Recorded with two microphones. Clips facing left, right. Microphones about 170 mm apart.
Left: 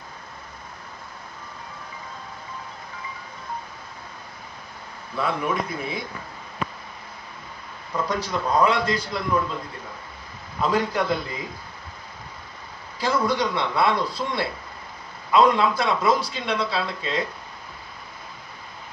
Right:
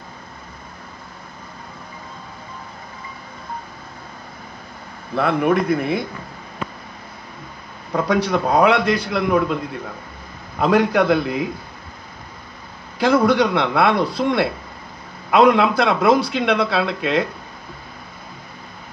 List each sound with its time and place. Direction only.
5.1 s a man's voice: 65° right (ahead or behind)
7.9 s a man's voice: 65° right (ahead or behind)
10.6 s a man's voice: 65° right (ahead or behind)
13.0 s a man's voice: 65° right (ahead or behind)